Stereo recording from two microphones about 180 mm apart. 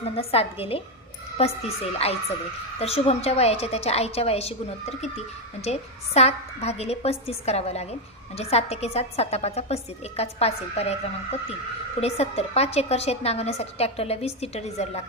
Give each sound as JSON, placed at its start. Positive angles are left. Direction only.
{"t": 0.0, "sound": "a woman's voice", "side_deg": 35}